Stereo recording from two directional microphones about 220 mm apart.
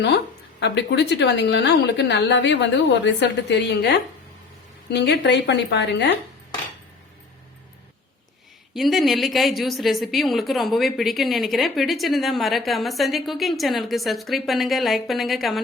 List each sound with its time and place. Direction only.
0.6 s a woman's voice: 50° left (ahead or behind)
8.7 s a woman's voice: centre (ahead or behind)